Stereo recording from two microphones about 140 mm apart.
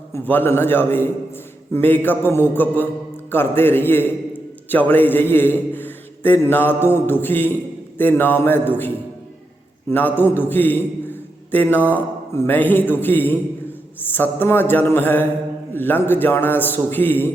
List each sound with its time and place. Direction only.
0.1 s a man's voice: 15° left (ahead or behind)
10.2 s a man's voice: 15° left (ahead or behind)